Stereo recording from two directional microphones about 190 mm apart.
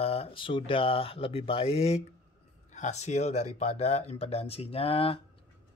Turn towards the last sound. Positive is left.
turn(degrees=30)  # may be behind; listen again after turning